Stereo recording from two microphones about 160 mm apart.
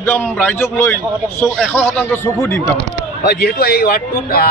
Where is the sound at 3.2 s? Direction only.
85° left.